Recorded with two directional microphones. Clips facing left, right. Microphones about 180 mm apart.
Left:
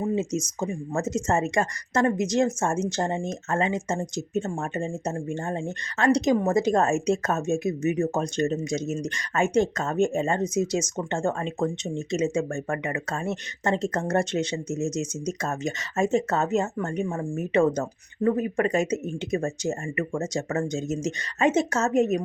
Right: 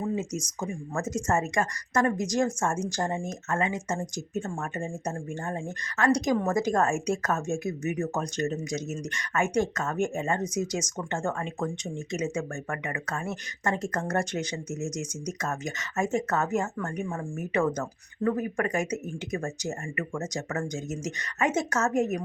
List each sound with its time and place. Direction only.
0.2 s a woman's voice: 25° left (ahead or behind)